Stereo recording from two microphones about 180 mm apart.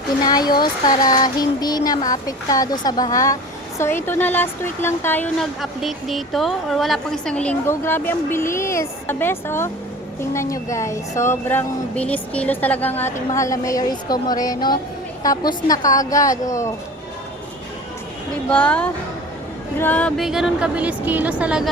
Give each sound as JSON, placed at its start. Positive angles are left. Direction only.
{"t": 0.3, "sound": "speech", "side_deg": 20}
{"t": 18.4, "sound": "speech", "side_deg": 5}